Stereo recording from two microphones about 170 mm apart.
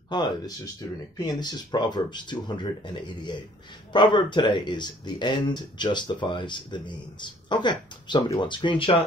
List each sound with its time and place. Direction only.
0.1 s speech: 25° left (ahead or behind)